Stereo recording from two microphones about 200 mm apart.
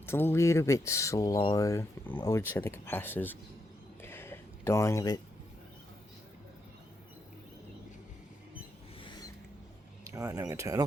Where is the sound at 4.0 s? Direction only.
10° left (ahead or behind).